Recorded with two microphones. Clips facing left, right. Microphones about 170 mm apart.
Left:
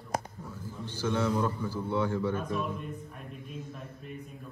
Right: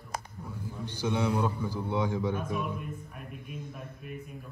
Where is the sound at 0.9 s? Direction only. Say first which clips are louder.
Even; 15° right (ahead or behind).